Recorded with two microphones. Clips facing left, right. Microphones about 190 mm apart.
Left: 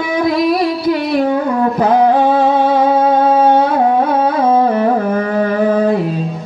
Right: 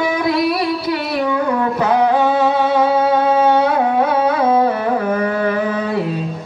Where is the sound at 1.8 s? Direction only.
50° left (ahead or behind).